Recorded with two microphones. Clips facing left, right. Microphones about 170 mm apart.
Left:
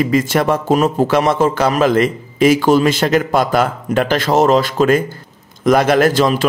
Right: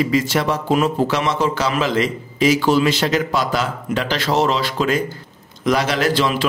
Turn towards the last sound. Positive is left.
turn(degrees=45)  # may be behind; listen again after turning